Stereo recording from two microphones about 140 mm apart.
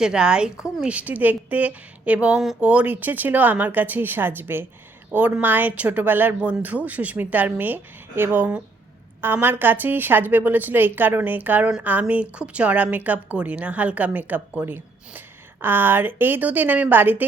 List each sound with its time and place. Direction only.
0.0 s a woman's voice: 5° right (ahead or behind)